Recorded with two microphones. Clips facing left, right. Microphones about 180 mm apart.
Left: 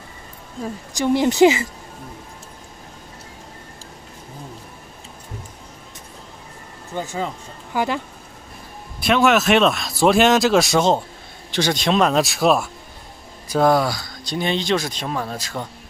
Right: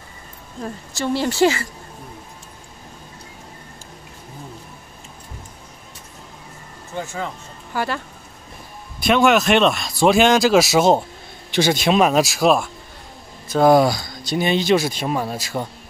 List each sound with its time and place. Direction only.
0.9 s speech: 15° left (ahead or behind)
7.7 s speech: 15° left (ahead or behind)
9.0 s speech: centre (ahead or behind)
13.7 s speech: 15° right (ahead or behind)